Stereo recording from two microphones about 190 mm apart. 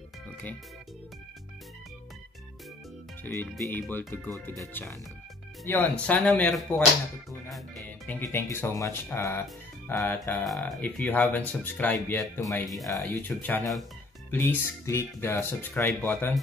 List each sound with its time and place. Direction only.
3.3 s speech: 10° left (ahead or behind)
8.1 s speech: 10° left (ahead or behind)